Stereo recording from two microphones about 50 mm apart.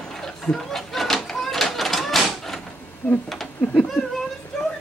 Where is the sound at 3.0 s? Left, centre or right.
Left.